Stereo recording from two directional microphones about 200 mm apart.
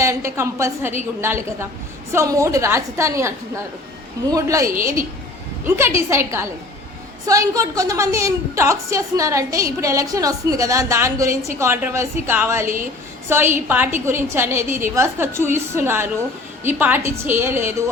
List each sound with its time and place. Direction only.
0.0 s a woman's voice: 15° right (ahead or behind)
5.7 s a woman's voice: 15° right (ahead or behind)